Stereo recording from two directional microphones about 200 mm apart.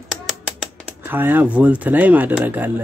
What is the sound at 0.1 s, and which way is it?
Speech, centre (ahead or behind).